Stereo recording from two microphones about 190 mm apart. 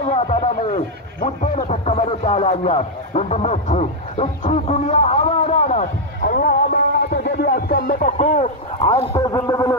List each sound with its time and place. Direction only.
0.0 s a sound: 35° left (ahead or behind)
1.2 s speech: 40° left (ahead or behind)
9.1 s a man's voice: 15° left (ahead or behind)